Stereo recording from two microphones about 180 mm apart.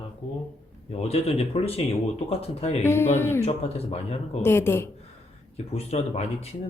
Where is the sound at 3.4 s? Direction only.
35° left (ahead or behind).